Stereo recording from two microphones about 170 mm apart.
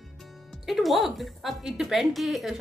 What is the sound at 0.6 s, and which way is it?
A woman's voice, centre (ahead or behind).